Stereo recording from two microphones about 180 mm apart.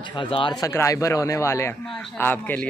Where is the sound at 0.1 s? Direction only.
25° left (ahead or behind).